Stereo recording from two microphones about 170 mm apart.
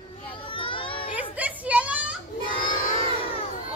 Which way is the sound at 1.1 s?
10° right (ahead or behind).